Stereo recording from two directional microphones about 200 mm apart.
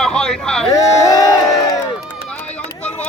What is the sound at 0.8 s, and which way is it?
Speech, 15° left (ahead or behind).